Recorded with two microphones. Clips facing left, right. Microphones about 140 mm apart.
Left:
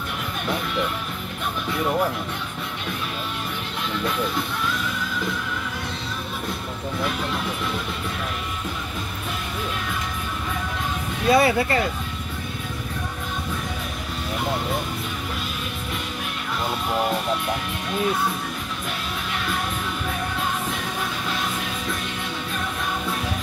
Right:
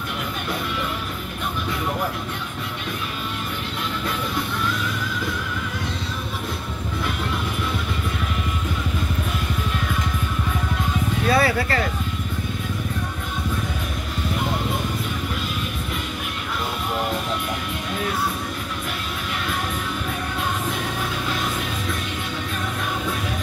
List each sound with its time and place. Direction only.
11.2 s speech: 20° left (ahead or behind)